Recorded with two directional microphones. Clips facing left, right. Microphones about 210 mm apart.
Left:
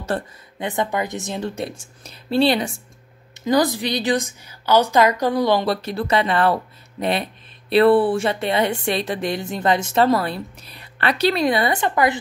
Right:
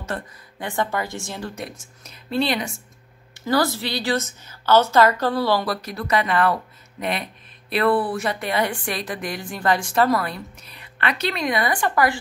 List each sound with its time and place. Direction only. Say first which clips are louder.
0.1 s speech: left 5 dB; 30° left (ahead or behind)
0.6 s speech: left 2 dB; 20° left (ahead or behind)
3.3 s a woman's voice: left 3 dB; 20° left (ahead or behind)